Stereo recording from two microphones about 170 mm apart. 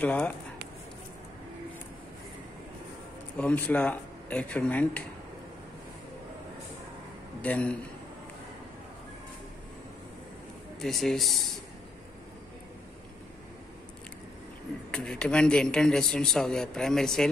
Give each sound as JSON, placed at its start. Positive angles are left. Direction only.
{"t": 0.0, "sound": "speech", "side_deg": 10}
{"t": 3.3, "sound": "speech", "side_deg": 10}
{"t": 7.4, "sound": "speech", "side_deg": 5}
{"t": 10.8, "sound": "a man's voice", "side_deg": 0}
{"t": 14.9, "sound": "a man's voice", "side_deg": 5}